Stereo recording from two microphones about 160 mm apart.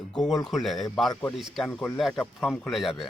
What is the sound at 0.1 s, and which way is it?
Speech, centre (ahead or behind).